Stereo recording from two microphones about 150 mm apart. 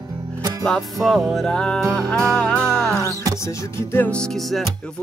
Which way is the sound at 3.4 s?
15° left (ahead or behind).